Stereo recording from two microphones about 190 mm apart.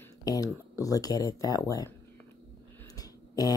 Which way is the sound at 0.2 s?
20° left (ahead or behind).